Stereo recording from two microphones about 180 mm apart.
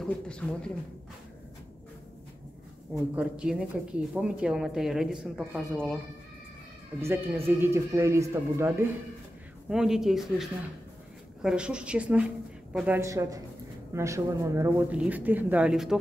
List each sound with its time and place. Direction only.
0.0 s speech: 5° left (ahead or behind)
3.2 s speech: 5° right (ahead or behind)
7.0 s speech: 15° right (ahead or behind)